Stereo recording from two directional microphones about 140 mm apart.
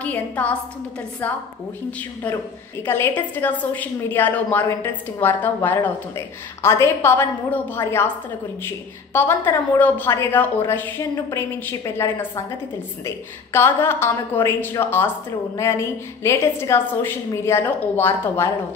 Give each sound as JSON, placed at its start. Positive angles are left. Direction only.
{"t": 0.0, "sound": "a woman's voice", "side_deg": 10}
{"t": 2.9, "sound": "a woman's voice", "side_deg": 15}